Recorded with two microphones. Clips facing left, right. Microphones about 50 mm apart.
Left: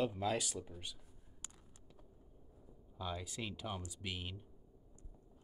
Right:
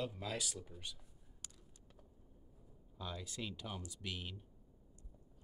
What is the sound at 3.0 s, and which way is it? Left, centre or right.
Speech, centre.